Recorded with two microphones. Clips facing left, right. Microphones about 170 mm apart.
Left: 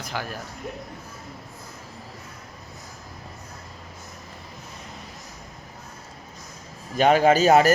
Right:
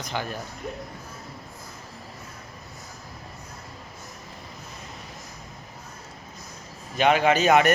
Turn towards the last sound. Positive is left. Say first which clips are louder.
# left 3 dB
turn(degrees=30)  # may be behind; listen again after turning